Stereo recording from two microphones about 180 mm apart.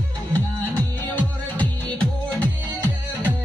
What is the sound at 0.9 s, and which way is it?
Music, 10° left (ahead or behind).